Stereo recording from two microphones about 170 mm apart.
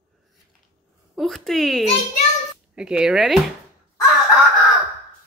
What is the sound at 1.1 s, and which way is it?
A child's voice, centre (ahead or behind).